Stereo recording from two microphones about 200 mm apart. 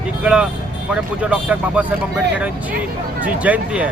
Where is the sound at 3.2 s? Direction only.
5° right (ahead or behind).